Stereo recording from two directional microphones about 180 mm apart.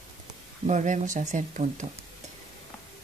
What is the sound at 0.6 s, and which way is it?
Speech, 40° right (ahead or behind).